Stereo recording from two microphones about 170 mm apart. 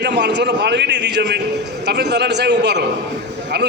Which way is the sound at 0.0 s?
90° right.